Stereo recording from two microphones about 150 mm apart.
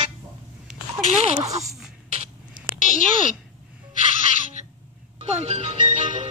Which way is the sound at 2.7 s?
60° left (ahead or behind).